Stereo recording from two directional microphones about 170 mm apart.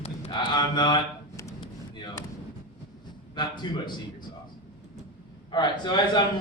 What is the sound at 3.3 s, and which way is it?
Speech, 25° left (ahead or behind).